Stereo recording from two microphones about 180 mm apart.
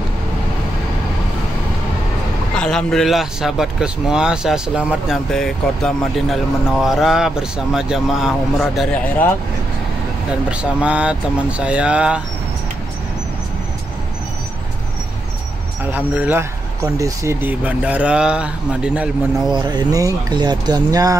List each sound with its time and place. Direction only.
2.5 s a man's voice: 5° left (ahead or behind)
10.5 s a man's voice: 5° right (ahead or behind)
15.8 s a man's voice: 10° right (ahead or behind)
19.5 s speech: 25° right (ahead or behind)